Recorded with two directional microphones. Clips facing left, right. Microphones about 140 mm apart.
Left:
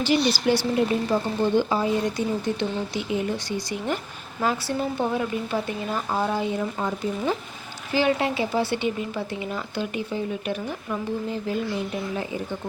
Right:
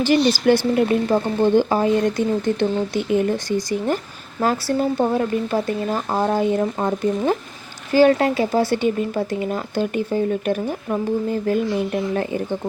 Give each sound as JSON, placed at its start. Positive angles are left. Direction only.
{"t": 0.0, "sound": "speech", "side_deg": -45}